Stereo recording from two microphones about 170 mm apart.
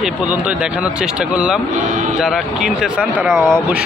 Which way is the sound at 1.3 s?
5° right (ahead or behind).